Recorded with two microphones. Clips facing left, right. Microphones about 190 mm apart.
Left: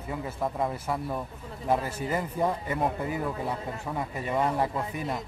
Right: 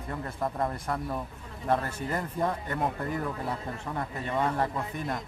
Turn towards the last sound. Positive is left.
turn(degrees=10)  # may be behind; listen again after turning